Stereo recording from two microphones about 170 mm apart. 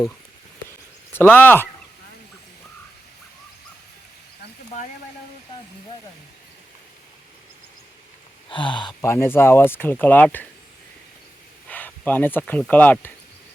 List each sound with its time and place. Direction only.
1.1 s speech: 10° left (ahead or behind)
8.4 s speech: 30° left (ahead or behind)
9.0 s speech: 15° left (ahead or behind)
11.7 s speech: 10° left (ahead or behind)